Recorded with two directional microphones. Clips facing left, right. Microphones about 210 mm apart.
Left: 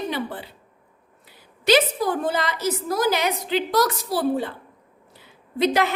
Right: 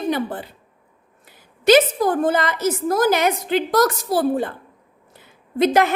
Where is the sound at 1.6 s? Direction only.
50° right (ahead or behind).